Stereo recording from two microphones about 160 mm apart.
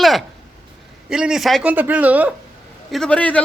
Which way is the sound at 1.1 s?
5° right (ahead or behind).